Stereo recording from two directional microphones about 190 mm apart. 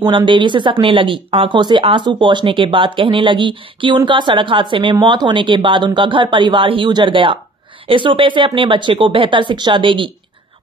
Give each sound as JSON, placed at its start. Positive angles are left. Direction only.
{"t": 0.1, "sound": "speech", "side_deg": -25}